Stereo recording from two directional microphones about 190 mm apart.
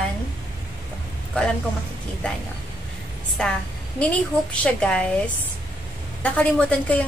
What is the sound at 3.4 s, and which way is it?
A woman's voice, centre (ahead or behind).